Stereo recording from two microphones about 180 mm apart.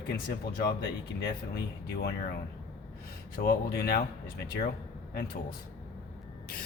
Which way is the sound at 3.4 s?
60° left (ahead or behind).